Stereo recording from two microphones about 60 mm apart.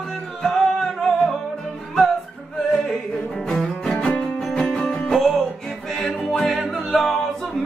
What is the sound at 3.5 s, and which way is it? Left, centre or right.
Music, centre.